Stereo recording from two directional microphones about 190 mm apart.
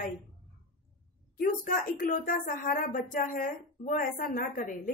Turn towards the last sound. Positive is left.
turn(degrees=45)  # may be behind; listen again after turning